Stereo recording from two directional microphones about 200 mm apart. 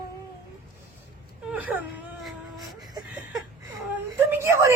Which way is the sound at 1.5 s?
10° right (ahead or behind).